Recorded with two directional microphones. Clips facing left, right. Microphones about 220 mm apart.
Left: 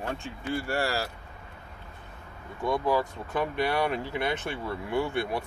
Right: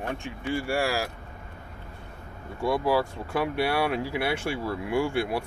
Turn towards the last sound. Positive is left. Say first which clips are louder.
# right 2 dB
turn(degrees=-10)  # may be behind; listen again after turning